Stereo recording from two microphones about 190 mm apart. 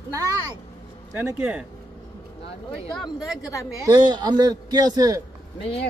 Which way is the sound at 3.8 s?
25° right (ahead or behind).